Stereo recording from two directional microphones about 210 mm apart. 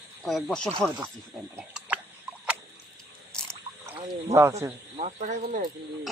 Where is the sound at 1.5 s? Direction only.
5° right (ahead or behind).